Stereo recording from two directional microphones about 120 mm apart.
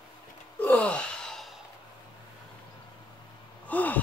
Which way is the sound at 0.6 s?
10° left (ahead or behind).